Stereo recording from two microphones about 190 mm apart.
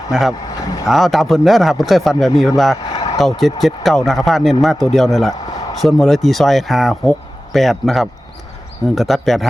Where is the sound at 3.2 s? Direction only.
Centre (ahead or behind).